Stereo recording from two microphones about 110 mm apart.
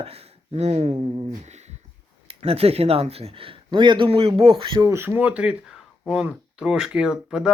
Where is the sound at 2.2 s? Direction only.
65° right (ahead or behind).